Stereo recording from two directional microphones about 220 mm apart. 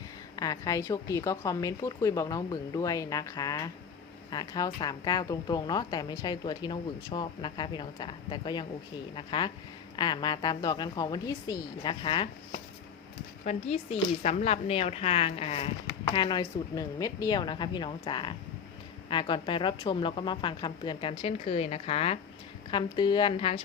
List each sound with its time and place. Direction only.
0.3 s a woman's voice: 15° left (ahead or behind)
13.4 s a woman's voice: 30° left (ahead or behind)